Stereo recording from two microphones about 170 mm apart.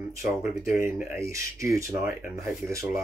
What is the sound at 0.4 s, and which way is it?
Speech, 55° left (ahead or behind).